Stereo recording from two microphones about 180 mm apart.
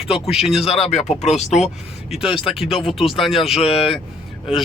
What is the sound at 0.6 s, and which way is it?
Speech, 35° left (ahead or behind).